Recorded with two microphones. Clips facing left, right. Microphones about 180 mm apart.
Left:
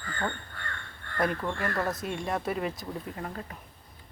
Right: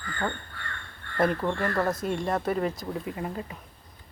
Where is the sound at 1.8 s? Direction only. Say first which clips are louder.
Right 4 dB; centre (ahead or behind).